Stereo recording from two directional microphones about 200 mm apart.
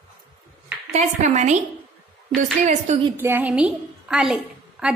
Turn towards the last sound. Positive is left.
turn(degrees=-5)  # may be behind; listen again after turning